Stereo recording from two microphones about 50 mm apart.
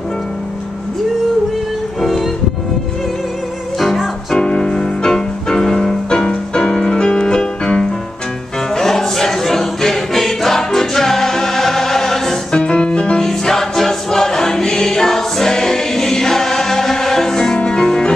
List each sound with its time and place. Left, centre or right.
2.0 s music: centre
3.8 s music: centre
4.4 s music: centre
8.7 s choir: centre
12.5 s music: left
13.2 s choir: centre